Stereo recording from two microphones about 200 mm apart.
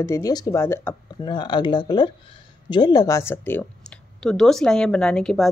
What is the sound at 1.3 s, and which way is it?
Speech, 25° left (ahead or behind).